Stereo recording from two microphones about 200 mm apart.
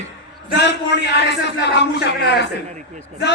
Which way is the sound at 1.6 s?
60° left (ahead or behind).